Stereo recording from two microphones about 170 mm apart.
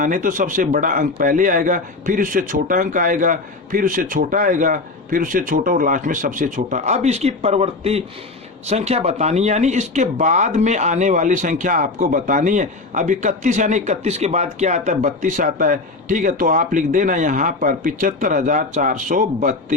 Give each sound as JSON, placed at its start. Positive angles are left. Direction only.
{"t": 0.0, "sound": "speech", "side_deg": -50}